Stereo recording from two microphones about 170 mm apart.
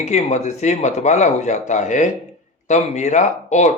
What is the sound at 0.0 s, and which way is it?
Speech, 40° left (ahead or behind).